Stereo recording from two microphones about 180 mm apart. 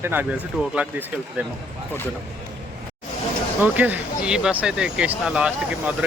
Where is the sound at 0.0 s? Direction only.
10° right (ahead or behind).